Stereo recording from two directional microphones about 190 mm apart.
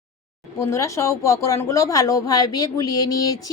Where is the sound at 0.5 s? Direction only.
15° left (ahead or behind).